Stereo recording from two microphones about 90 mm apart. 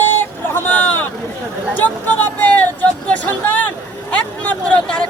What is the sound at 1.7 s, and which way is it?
Vehicle, 20° left (ahead or behind).